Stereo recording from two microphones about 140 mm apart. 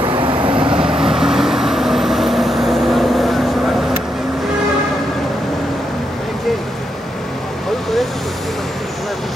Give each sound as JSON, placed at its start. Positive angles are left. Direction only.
{"t": 0.0, "sound": "vehicle", "side_deg": -35}
{"t": 0.7, "sound": "vehicle", "side_deg": -5}